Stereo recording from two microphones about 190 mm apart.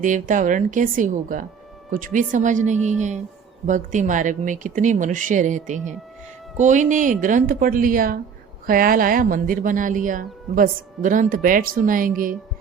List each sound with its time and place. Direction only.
0.0 s a woman's voice: 45° right (ahead or behind)